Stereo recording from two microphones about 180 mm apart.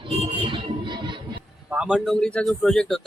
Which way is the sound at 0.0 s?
30° right (ahead or behind).